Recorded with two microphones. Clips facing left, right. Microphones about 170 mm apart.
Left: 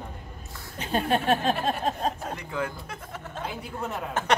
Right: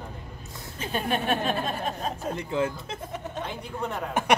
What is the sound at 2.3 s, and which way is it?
Speech, 25° right (ahead or behind).